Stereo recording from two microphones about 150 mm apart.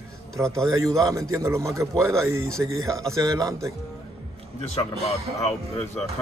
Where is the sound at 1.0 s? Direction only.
20° right (ahead or behind).